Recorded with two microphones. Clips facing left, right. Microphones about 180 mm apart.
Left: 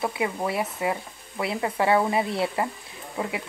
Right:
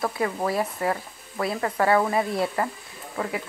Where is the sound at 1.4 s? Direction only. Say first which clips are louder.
Right 1 dB; 20° left (ahead or behind).